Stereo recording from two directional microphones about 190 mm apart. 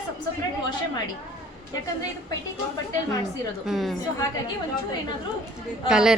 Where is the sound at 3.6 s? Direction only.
Centre (ahead or behind).